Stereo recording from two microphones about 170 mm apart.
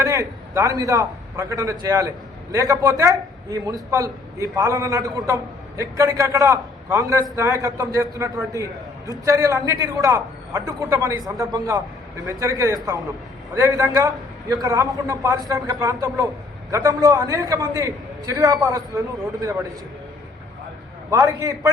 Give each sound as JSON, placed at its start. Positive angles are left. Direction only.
{"t": 0.0, "sound": "a man's voice", "side_deg": -20}
{"t": 21.1, "sound": "a man's voice", "side_deg": -20}